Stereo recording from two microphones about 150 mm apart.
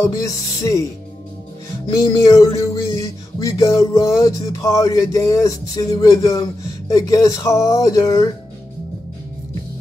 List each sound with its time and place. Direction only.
0.0 s music: 20° left (ahead or behind)
1.9 s music: 25° left (ahead or behind)